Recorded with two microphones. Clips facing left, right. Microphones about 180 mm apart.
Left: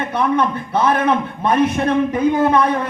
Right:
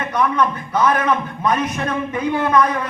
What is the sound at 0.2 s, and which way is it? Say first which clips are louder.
A man's voice: left 1 dB; 30° left (ahead or behind).